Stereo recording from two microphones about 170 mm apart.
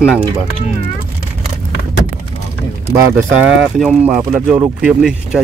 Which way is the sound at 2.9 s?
20° right (ahead or behind).